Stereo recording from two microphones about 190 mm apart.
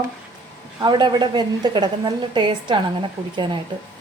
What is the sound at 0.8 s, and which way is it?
A woman's voice, 25° right (ahead or behind).